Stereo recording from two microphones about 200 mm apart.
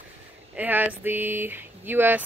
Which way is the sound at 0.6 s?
10° right (ahead or behind).